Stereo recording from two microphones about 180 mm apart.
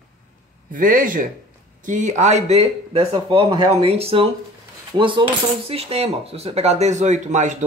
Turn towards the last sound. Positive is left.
turn(degrees=-40)  # may be behind; listen again after turning